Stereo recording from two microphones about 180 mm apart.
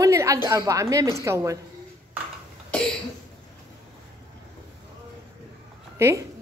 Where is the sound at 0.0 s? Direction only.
15° right (ahead or behind).